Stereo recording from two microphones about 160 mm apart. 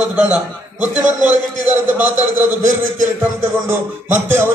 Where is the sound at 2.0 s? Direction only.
50° right (ahead or behind).